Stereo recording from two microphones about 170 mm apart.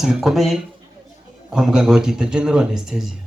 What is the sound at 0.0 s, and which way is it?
Speech, 5° right (ahead or behind).